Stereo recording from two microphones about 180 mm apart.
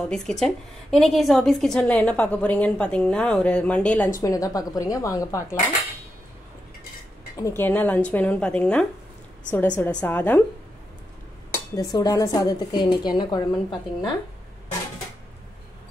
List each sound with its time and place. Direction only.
0.1 s a woman's voice: centre (ahead or behind)
4.2 s speech: 20° left (ahead or behind)
7.3 s speech: 15° left (ahead or behind)
11.5 s speech: 20° left (ahead or behind)